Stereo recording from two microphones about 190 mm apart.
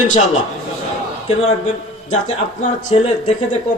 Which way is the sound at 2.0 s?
40° left (ahead or behind).